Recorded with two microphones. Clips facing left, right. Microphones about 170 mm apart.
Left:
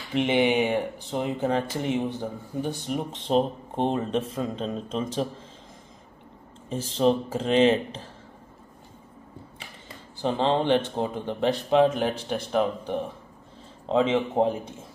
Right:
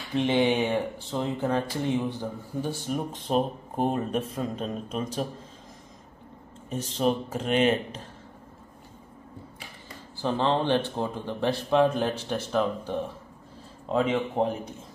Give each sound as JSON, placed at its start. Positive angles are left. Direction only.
{"t": 0.1, "sound": "speech", "side_deg": 20}
{"t": 6.7, "sound": "speech", "side_deg": 30}
{"t": 10.1, "sound": "speech", "side_deg": 20}